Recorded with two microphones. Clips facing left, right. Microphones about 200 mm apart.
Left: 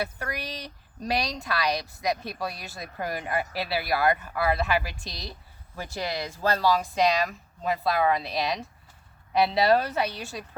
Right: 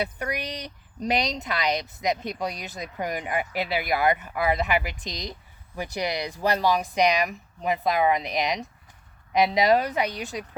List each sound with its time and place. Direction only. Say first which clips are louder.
0.0 s speech: right 3 dB; 20° right (ahead or behind)